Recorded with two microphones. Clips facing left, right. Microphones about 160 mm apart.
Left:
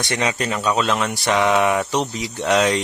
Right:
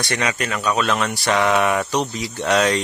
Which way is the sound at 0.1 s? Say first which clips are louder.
Left 2 dB; 25° left (ahead or behind).